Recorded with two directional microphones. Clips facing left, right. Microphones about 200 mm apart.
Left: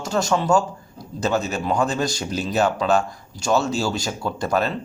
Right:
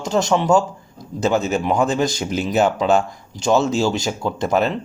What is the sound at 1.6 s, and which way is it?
Speech, 20° right (ahead or behind).